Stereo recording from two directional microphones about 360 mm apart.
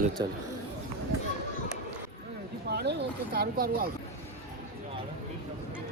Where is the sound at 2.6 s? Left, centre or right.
Right.